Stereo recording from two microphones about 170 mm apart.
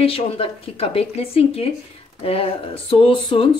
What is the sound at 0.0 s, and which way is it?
Speech, 35° left (ahead or behind).